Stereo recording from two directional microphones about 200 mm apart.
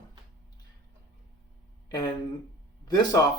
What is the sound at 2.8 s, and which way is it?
Speech, 20° left (ahead or behind).